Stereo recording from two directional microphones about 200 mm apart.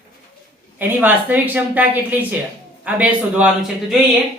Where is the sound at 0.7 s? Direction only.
10° right (ahead or behind).